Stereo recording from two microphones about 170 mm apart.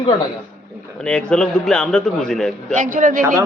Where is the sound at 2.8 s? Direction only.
50° right (ahead or behind).